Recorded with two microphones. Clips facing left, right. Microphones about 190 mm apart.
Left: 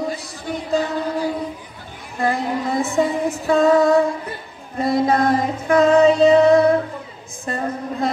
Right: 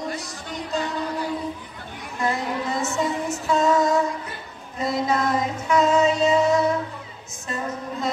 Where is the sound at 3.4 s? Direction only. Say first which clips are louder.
Left 5 dB; 55° left (ahead or behind).